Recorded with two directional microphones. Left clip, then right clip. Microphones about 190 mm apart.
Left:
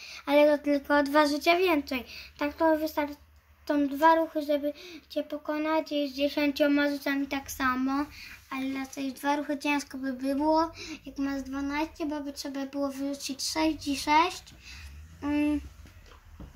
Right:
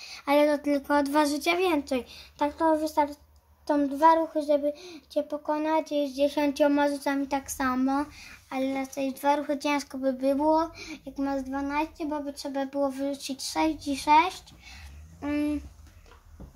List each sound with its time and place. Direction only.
0.0 s a woman's voice: 55° right (ahead or behind)